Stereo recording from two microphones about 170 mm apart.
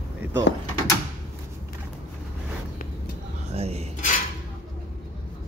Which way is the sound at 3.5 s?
40° right (ahead or behind).